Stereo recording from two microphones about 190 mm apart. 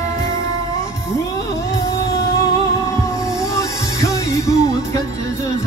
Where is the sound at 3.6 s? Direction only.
15° left (ahead or behind).